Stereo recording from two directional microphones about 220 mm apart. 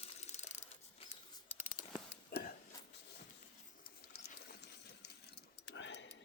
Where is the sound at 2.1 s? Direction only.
45° left (ahead or behind).